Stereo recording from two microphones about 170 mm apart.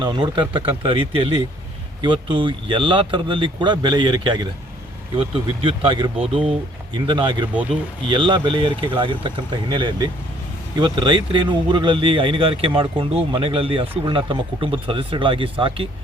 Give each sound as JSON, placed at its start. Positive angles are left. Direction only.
{"t": 0.0, "sound": "speech", "side_deg": -30}